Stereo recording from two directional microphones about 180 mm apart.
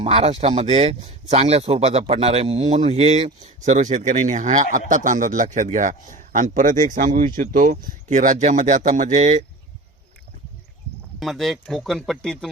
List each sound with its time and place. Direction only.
0.0 s speech: 35° right (ahead or behind)
11.2 s speech: centre (ahead or behind)